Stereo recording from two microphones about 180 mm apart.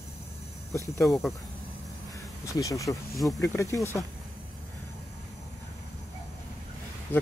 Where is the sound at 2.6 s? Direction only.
20° left (ahead or behind).